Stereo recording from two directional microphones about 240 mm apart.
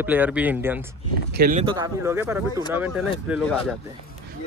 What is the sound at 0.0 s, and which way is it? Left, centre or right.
Speech, centre.